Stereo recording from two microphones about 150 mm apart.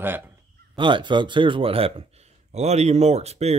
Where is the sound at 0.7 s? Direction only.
35° right (ahead or behind).